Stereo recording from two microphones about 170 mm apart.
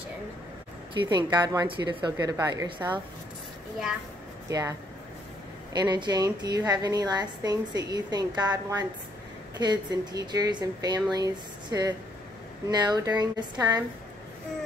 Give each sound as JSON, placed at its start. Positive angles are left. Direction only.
{"t": 0.9, "sound": "speech", "side_deg": -25}
{"t": 4.5, "sound": "speech", "side_deg": -20}
{"t": 5.8, "sound": "speech", "side_deg": -25}